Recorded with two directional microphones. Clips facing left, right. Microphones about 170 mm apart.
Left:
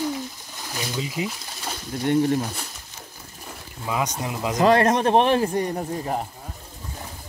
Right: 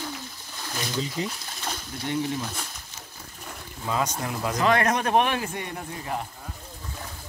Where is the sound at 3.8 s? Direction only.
15° left (ahead or behind).